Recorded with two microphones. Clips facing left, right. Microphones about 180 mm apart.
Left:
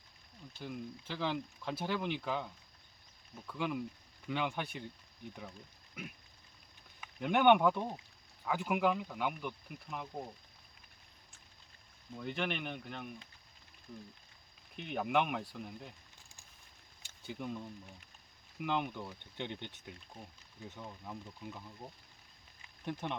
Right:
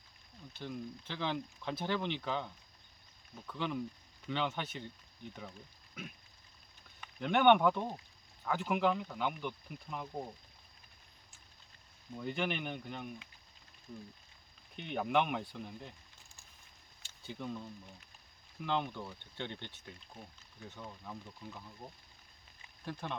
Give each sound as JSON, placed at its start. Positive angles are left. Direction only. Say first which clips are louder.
{"t": 0.6, "sound": "speech", "louder": "right 1 dB", "side_deg": 5}
{"t": 7.0, "sound": "speech", "louder": "even", "side_deg": 10}
{"t": 12.1, "sound": "speech", "louder": "right 1 dB", "side_deg": 0}
{"t": 14.8, "sound": "speech", "louder": "right 1 dB", "side_deg": 0}
{"t": 17.0, "sound": "a sound", "louder": "left 1 dB", "side_deg": 15}
{"t": 18.6, "sound": "speech", "louder": "even", "side_deg": 10}
{"t": 22.9, "sound": "speech", "louder": "left 3 dB", "side_deg": 20}